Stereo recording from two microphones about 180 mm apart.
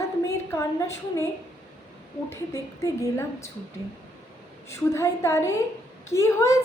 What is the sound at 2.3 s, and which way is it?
Speech, 15° left (ahead or behind).